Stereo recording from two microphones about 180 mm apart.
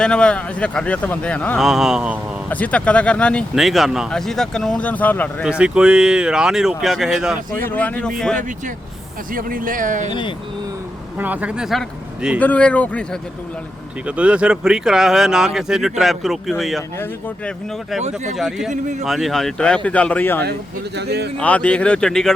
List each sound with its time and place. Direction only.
0.0 s speech: 5° left (ahead or behind)
2.5 s speech: 10° left (ahead or behind)
5.5 s speech: 5° right (ahead or behind)
7.7 s speech: 10° left (ahead or behind)
8.4 s speech: 45° right (ahead or behind)
10.1 s speech: 25° left (ahead or behind)
11.2 s speech: 10° right (ahead or behind); by 13.1 s 5° left (ahead or behind)
14.1 s speech: 5° right (ahead or behind); by 17.5 s 10° left (ahead or behind)
18.3 s speech: centre (ahead or behind)
18.7 s speech: 40° right (ahead or behind)
19.0 s speech: centre (ahead or behind)
20.4 s speech: 65° right (ahead or behind)
21.3 s speech: 10° left (ahead or behind)